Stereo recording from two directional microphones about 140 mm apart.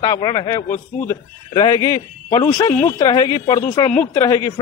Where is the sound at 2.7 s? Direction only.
10° left (ahead or behind).